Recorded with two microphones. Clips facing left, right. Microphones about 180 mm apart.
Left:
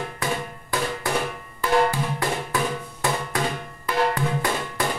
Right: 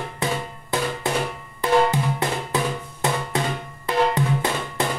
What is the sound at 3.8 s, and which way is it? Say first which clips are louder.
Drum: right 2 dB; 20° right (ahead or behind).